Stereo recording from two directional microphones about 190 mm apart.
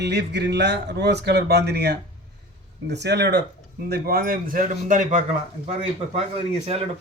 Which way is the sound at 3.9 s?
50° right (ahead or behind).